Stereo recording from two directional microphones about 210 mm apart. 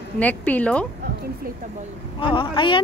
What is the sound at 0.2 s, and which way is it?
Speech, 5° left (ahead or behind).